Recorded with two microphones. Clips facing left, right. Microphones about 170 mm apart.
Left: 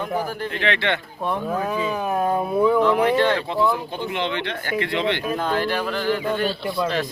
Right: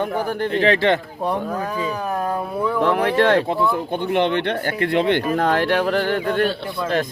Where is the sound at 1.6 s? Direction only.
10° left (ahead or behind).